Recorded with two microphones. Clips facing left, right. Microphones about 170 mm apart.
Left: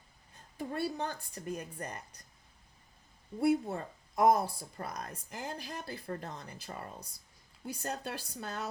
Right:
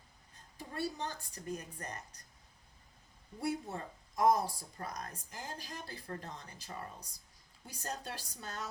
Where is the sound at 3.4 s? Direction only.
60° left (ahead or behind).